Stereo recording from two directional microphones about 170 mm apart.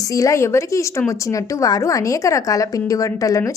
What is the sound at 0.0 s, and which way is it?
A woman's voice, 20° left (ahead or behind).